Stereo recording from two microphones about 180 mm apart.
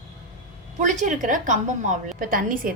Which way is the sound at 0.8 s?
45° right (ahead or behind).